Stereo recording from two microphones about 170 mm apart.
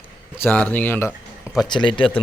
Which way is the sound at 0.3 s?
10° left (ahead or behind).